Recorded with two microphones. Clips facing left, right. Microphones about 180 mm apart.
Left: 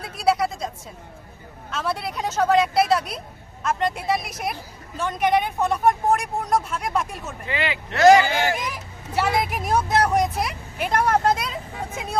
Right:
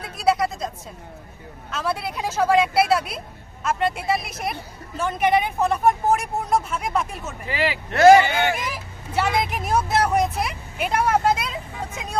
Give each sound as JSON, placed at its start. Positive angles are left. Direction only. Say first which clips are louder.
{"t": 0.0, "sound": "a sound", "louder": "even", "side_deg": 0}
{"t": 1.7, "sound": "speech", "louder": "right 1 dB", "side_deg": 0}
{"t": 7.9, "sound": "speech", "louder": "right 2 dB", "side_deg": -50}
{"t": 8.4, "sound": "speech", "louder": "right 1 dB", "side_deg": 0}